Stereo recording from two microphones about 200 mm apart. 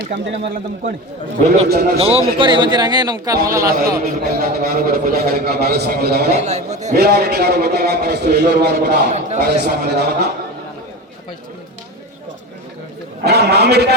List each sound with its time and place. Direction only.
0.0 s a man's voice: 60° right (ahead or behind)
1.7 s a man's voice: 50° right (ahead or behind)
2.0 s speech: 30° right (ahead or behind)
3.7 s a man's voice: 50° right (ahead or behind)
6.4 s a man's voice: 35° right (ahead or behind)
6.9 s a man's voice: 55° right (ahead or behind)
13.2 s a man's voice: 55° right (ahead or behind)